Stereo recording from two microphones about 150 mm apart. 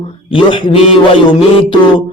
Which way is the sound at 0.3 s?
35° left (ahead or behind).